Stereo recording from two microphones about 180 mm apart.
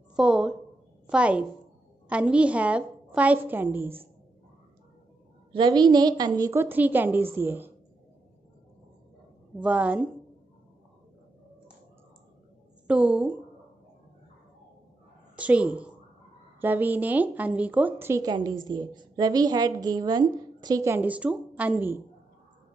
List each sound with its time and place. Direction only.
0.1 s a woman's voice: 5° right (ahead or behind)
5.5 s a woman's voice: 25° right (ahead or behind)
9.6 s a woman's voice: 5° right (ahead or behind)
12.8 s a woman's voice: 5° right (ahead or behind)
15.3 s a woman's voice: 5° right (ahead or behind)